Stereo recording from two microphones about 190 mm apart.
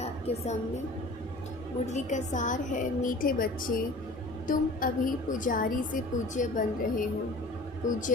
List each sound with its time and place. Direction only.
0.3 s a woman's voice: 35° left (ahead or behind)
1.9 s a woman's voice: 40° left (ahead or behind)